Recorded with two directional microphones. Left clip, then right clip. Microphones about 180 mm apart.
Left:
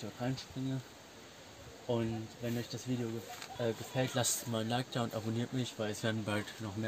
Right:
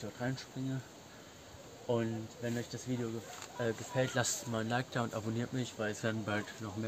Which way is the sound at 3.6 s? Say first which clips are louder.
Right 1 dB; 5° left (ahead or behind).